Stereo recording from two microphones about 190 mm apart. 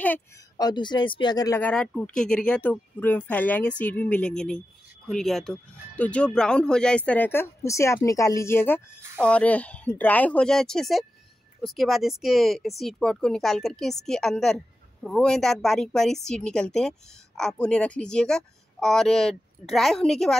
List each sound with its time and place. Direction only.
0.6 s speech: 20° left (ahead or behind)
1.6 s speech: 5° left (ahead or behind)